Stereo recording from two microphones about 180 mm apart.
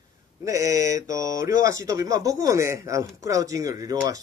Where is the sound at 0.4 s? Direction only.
15° right (ahead or behind).